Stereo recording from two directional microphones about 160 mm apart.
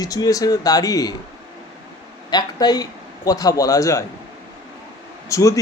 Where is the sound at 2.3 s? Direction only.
25° left (ahead or behind).